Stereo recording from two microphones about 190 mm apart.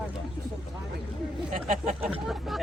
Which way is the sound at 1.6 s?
40° right (ahead or behind).